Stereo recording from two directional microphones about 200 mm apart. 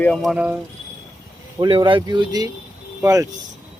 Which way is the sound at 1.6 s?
25° right (ahead or behind).